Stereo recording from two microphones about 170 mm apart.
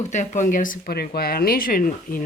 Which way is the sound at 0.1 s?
45° left (ahead or behind).